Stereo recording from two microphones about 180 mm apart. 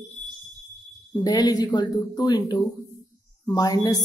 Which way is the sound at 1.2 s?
20° left (ahead or behind).